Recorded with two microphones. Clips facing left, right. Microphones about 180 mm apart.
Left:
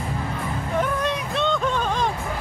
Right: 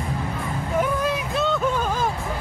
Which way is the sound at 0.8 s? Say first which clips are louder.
Right 2 dB; 5° right (ahead or behind).